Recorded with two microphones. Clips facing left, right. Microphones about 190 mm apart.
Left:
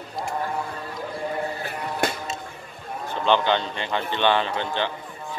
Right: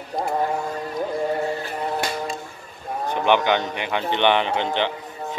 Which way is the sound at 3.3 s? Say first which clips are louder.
Right 1 dB; 15° right (ahead or behind).